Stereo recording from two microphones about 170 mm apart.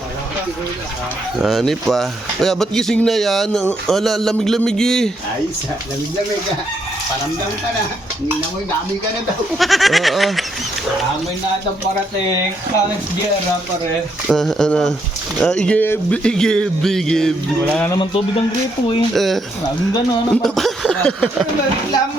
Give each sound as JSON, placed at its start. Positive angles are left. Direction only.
{"t": 1.4, "sound": "speech", "side_deg": 0}
{"t": 9.6, "sound": "speech", "side_deg": 0}
{"t": 14.3, "sound": "speech", "side_deg": 0}
{"t": 17.9, "sound": "speech", "side_deg": 30}
{"t": 19.1, "sound": "speech", "side_deg": 0}